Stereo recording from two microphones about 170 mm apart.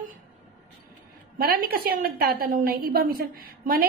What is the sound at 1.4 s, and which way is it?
A woman's voice, 60° right (ahead or behind).